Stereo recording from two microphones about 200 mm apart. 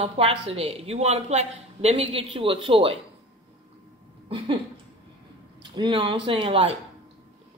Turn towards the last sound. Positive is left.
turn(degrees=-25)  # may be behind; listen again after turning